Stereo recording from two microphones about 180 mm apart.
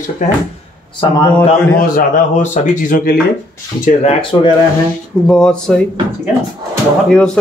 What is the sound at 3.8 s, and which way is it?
Speech, 35° left (ahead or behind).